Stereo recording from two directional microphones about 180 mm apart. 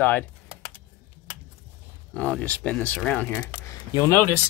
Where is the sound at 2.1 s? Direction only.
5° left (ahead or behind).